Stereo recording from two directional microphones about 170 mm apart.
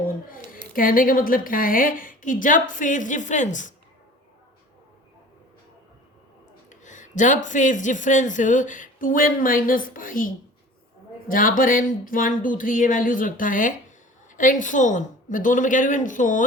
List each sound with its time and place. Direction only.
0.3 s a sound: 55° left (ahead or behind)
0.7 s speech: 55° left (ahead or behind)
6.7 s speech: 45° left (ahead or behind)